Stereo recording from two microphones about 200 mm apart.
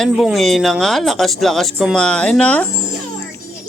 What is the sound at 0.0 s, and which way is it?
Speech, centre (ahead or behind).